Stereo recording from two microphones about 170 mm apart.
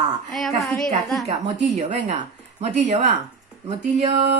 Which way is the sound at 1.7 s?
40° right (ahead or behind).